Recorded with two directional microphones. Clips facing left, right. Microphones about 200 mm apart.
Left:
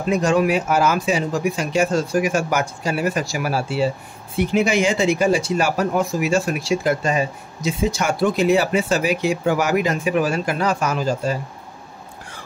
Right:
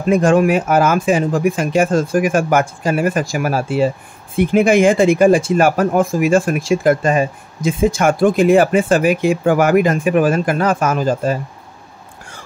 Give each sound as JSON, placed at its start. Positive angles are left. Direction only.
{"t": 0.1, "sound": "speech", "side_deg": -50}